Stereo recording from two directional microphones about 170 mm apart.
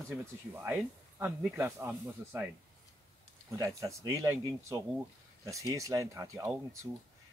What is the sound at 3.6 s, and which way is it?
Speech, 20° right (ahead or behind).